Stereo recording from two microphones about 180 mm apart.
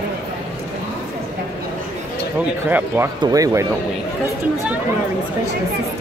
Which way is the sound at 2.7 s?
10° right (ahead or behind).